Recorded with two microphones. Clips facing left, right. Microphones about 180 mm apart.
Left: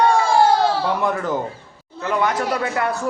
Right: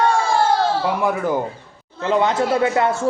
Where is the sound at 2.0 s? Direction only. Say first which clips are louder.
Right 3 dB; 25° right (ahead or behind).